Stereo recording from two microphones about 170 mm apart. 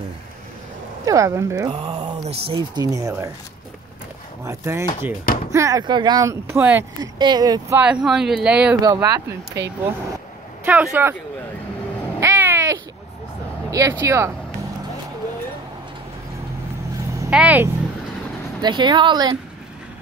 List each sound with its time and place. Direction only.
1.0 s speech: 20° right (ahead or behind)
2.2 s speech: 35° right (ahead or behind); by 3.3 s 20° right (ahead or behind)
4.5 s speech: 15° right (ahead or behind)
7.2 s speech: 25° right (ahead or behind)
7.8 s speech: 5° right (ahead or behind)
8.8 s speech: 20° right (ahead or behind)
12.2 s cat: 15° right (ahead or behind)
13.7 s speech: 20° right (ahead or behind)
17.3 s speech: 5° right (ahead or behind)
18.6 s speech: 25° right (ahead or behind)